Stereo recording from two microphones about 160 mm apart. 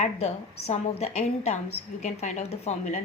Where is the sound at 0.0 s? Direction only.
45° left (ahead or behind).